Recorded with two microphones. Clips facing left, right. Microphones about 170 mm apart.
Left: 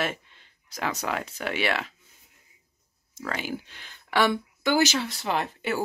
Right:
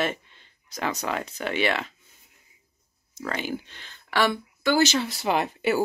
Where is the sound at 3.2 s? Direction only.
5° left (ahead or behind).